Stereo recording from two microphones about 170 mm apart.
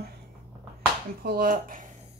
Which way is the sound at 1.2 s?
60° right (ahead or behind).